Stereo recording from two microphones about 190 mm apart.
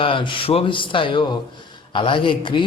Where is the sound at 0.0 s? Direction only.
25° left (ahead or behind).